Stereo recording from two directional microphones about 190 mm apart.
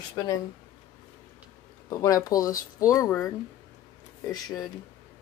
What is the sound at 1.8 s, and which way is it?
Speech, 15° left (ahead or behind).